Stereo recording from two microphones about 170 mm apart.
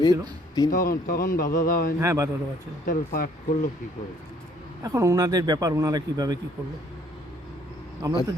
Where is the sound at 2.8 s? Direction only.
55° left (ahead or behind).